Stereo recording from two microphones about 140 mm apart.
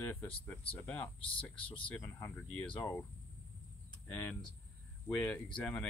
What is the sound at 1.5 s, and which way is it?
Speech, 40° left (ahead or behind).